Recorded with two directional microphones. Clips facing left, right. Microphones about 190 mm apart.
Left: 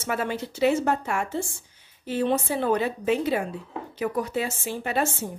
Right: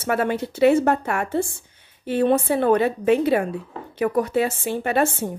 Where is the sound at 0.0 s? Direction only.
60° right (ahead or behind).